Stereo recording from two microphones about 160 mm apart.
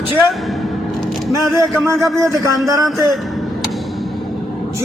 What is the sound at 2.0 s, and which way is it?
Speech, 20° right (ahead or behind).